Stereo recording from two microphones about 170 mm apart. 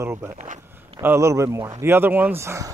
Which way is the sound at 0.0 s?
15° right (ahead or behind).